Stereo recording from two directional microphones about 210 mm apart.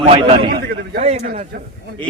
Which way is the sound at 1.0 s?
30° right (ahead or behind).